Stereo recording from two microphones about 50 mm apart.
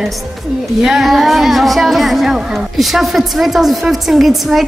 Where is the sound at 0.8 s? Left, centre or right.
Centre.